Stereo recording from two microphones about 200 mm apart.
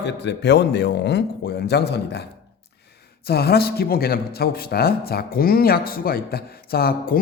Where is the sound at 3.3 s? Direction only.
50° left (ahead or behind).